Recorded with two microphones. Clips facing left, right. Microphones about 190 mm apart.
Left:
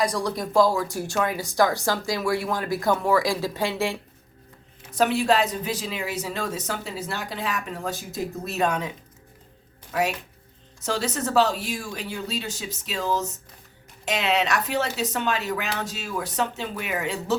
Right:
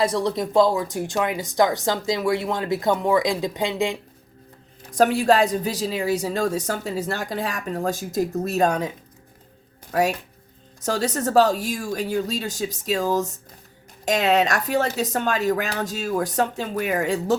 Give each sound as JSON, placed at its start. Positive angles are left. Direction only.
{"t": 0.0, "sound": "speech", "side_deg": -25}
{"t": 4.9, "sound": "speech", "side_deg": -40}
{"t": 9.9, "sound": "speech", "side_deg": -40}